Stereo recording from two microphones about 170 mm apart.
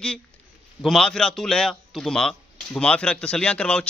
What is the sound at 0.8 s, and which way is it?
A man's voice, centre (ahead or behind).